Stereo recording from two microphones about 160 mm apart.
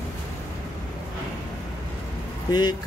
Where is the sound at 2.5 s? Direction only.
25° left (ahead or behind).